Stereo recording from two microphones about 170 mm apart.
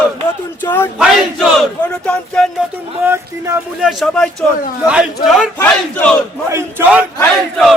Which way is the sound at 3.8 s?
Centre (ahead or behind).